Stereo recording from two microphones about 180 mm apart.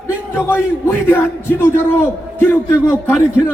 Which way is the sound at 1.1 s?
10° left (ahead or behind).